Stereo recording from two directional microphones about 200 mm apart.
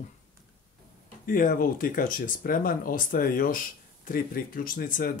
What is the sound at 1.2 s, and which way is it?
Speech, 45° left (ahead or behind).